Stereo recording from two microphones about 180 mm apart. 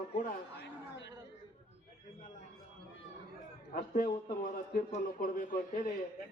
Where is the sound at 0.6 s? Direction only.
80° left.